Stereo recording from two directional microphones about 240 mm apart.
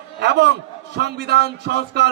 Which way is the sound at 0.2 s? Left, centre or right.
Right.